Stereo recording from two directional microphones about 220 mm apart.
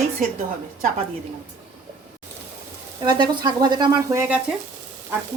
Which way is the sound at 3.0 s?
20° right (ahead or behind).